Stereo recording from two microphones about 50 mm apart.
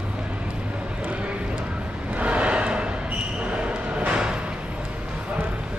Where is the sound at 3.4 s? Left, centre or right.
Right.